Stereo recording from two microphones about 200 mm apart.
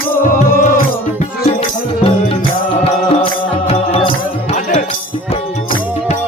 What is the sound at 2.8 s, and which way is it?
Music, 30° left (ahead or behind).